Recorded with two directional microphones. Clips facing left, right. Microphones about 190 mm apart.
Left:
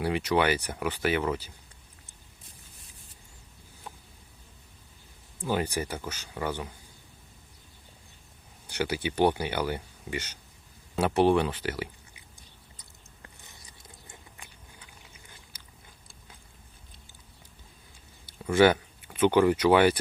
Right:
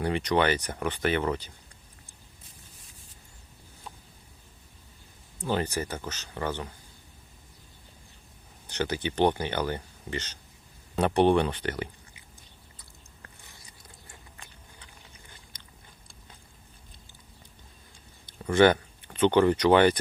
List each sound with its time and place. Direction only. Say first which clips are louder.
0.0 s speech: even; 5° left (ahead or behind)
5.5 s speech: even; 10° left (ahead or behind)
8.6 s speech: even; 10° left (ahead or behind)
13.2 s biting: left 1 dB; 20° left (ahead or behind)
15.5 s biting: right 1 dB; 5° left (ahead or behind)
18.3 s speech: right 1 dB; 5° left (ahead or behind)